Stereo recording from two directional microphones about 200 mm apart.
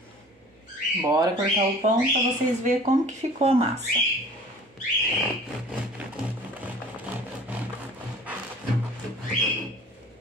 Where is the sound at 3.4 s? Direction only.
30° right (ahead or behind).